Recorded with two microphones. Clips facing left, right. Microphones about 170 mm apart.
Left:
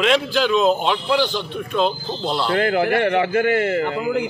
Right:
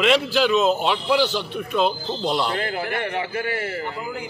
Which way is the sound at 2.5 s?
60° left (ahead or behind).